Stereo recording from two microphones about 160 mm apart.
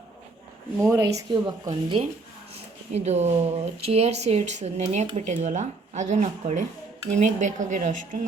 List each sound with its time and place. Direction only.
0.8 s speech: 20° right (ahead or behind)
2.9 s speech: 45° right (ahead or behind)